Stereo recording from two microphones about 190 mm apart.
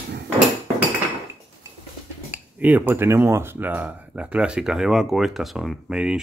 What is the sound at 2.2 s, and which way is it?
Speech, 10° right (ahead or behind).